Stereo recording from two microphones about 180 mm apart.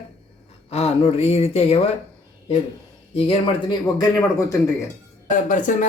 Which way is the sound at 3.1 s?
30° left (ahead or behind).